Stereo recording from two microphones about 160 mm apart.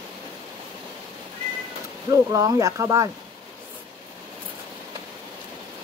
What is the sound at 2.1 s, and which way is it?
Speech, 20° right (ahead or behind).